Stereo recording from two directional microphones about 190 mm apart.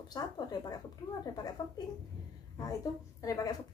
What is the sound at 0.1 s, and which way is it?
A woman's voice, 20° left (ahead or behind).